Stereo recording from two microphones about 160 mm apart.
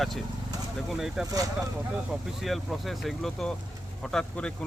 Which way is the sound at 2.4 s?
Centre (ahead or behind).